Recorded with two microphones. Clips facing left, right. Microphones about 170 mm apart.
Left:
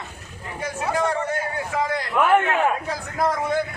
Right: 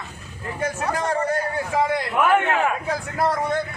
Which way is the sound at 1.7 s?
25° right (ahead or behind).